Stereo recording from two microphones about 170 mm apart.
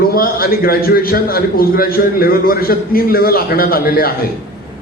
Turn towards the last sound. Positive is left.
turn(degrees=60)  # may be behind; listen again after turning